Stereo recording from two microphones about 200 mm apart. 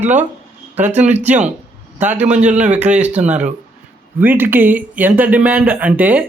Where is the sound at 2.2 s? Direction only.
35° right (ahead or behind).